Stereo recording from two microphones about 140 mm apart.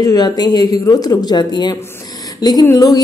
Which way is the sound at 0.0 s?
30° left (ahead or behind).